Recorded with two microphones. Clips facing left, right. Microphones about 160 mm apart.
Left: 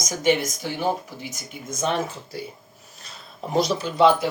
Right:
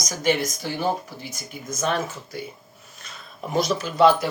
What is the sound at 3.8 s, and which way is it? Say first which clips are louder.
Speech: right 1 dB; 20° left (ahead or behind).